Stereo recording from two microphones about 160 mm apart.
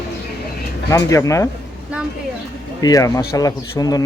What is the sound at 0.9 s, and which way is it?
Speech, 20° left (ahead or behind).